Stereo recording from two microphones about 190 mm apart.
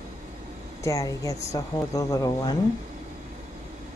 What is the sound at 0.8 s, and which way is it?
A woman's voice, 15° left (ahead or behind).